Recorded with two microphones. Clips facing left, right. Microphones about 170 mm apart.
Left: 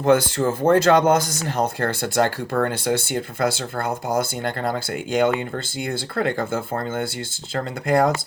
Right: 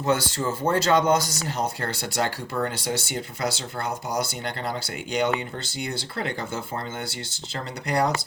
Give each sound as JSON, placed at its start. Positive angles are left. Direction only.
{"t": 0.0, "sound": "speech", "side_deg": 55}